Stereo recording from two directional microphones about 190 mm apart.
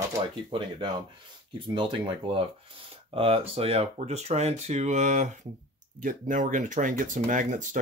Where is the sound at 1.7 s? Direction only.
25° right (ahead or behind).